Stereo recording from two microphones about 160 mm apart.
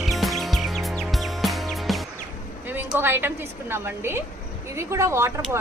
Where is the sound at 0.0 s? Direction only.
Centre (ahead or behind).